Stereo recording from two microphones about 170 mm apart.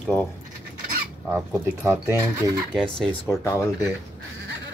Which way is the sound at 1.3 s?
10° right (ahead or behind).